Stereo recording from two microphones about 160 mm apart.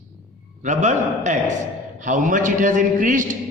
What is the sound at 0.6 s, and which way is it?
A man's voice, 50° right (ahead or behind).